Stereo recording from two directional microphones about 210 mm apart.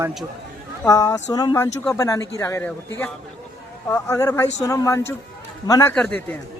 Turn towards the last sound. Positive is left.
turn(degrees=5)  # may be behind; listen again after turning